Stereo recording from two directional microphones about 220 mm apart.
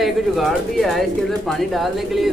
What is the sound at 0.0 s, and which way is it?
Speech, centre (ahead or behind).